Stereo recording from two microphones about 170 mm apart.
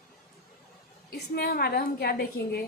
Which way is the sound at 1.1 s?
65° left (ahead or behind).